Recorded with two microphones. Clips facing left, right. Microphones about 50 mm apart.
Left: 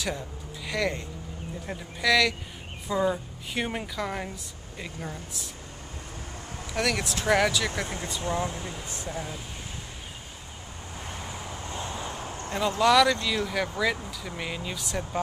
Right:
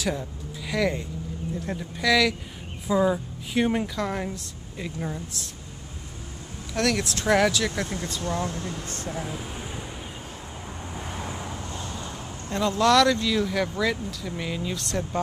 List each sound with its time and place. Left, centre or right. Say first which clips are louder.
0.0 s a woman's voice: right 4 dB; centre
6.7 s speech: right 3 dB; centre
8.2 s speech: even; centre
9.1 s speech: right 3 dB; centre
11.0 s vehicle: right 3 dB; centre
11.6 s vehicle: left 1 dB; centre
12.5 s speech: right 1 dB; centre